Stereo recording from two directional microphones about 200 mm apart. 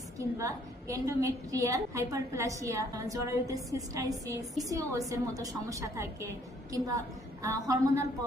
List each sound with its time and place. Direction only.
0.2 s a woman's voice: 15° right (ahead or behind)